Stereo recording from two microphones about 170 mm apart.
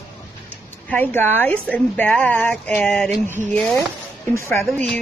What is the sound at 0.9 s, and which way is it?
A woman's voice, 10° left (ahead or behind).